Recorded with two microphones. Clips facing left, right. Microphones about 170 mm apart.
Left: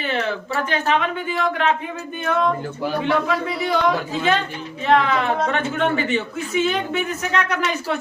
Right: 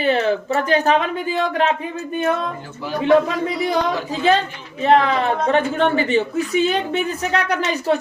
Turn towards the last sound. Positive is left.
turn(degrees=-35)  # may be behind; listen again after turning